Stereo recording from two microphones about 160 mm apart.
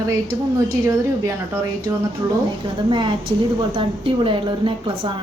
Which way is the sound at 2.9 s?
30° right (ahead or behind).